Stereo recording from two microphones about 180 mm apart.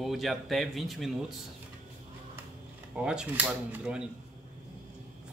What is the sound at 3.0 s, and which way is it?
Speech, 5° right (ahead or behind).